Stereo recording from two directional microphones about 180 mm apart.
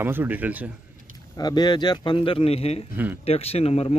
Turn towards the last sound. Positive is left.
turn(degrees=35)  # may be behind; listen again after turning